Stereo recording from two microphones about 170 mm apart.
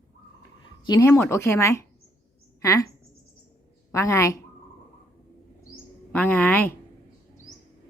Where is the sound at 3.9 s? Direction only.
15° left (ahead or behind).